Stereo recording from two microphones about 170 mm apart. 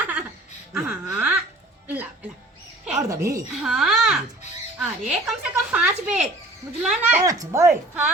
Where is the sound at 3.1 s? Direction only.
20° right (ahead or behind).